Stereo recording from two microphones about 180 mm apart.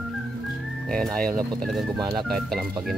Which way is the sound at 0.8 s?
5° left (ahead or behind).